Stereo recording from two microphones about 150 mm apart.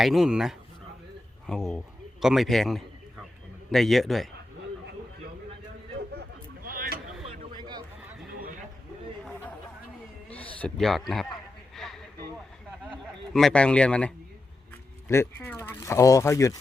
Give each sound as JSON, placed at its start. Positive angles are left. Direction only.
{"t": 0.0, "sound": "a man's voice", "side_deg": 0}
{"t": 6.7, "sound": "vehicle", "side_deg": -75}
{"t": 7.3, "sound": "a sound", "side_deg": -30}
{"t": 10.2, "sound": "cat", "side_deg": 10}
{"t": 10.6, "sound": "speech", "side_deg": 0}
{"t": 11.7, "sound": "a sound", "side_deg": 0}
{"t": 12.9, "sound": "a man's voice", "side_deg": 5}